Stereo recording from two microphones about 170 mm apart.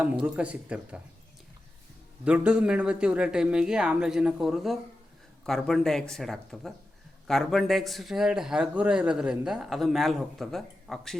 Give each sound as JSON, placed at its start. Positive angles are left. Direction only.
{"t": 0.0, "sound": "speech", "side_deg": -5}
{"t": 2.2, "sound": "a man's voice", "side_deg": -5}